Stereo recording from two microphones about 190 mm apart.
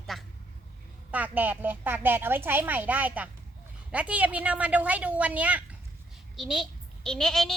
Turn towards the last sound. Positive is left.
turn(degrees=0)  # may be behind; listen again after turning